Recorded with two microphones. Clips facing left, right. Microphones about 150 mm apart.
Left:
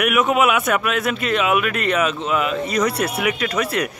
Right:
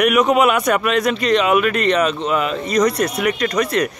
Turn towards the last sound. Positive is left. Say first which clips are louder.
# right 3 dB
turn(degrees=5)  # may be behind; listen again after turning